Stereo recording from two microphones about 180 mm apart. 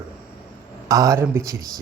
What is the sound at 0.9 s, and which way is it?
Speech, 20° right (ahead or behind).